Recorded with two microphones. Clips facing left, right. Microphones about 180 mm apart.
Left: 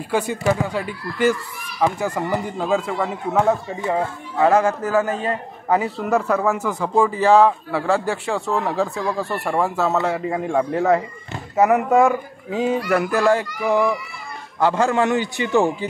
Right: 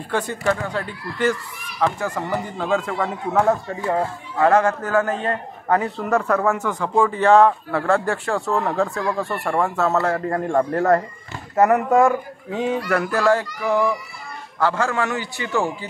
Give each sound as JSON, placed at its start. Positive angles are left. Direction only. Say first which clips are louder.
{"t": 0.1, "sound": "a man's voice", "louder": "left 2 dB", "side_deg": 10}